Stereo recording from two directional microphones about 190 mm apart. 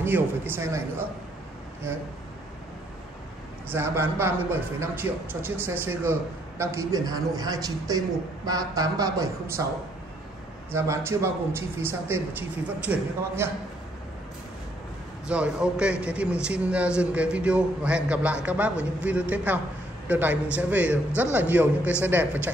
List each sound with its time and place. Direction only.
0.0 s a man's voice: 10° right (ahead or behind)
3.7 s a man's voice: 10° right (ahead or behind)
10.7 s a man's voice: 15° right (ahead or behind)
15.2 s a man's voice: 5° right (ahead or behind)